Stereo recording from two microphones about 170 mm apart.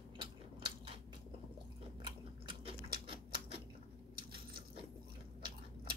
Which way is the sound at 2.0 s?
30° right (ahead or behind).